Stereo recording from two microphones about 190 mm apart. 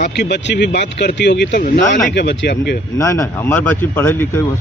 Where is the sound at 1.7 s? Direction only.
40° left (ahead or behind).